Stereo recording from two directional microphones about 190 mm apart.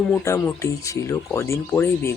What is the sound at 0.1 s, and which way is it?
Speech, 10° left (ahead or behind).